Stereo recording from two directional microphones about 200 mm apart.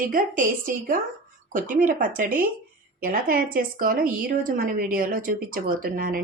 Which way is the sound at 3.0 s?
45° right (ahead or behind).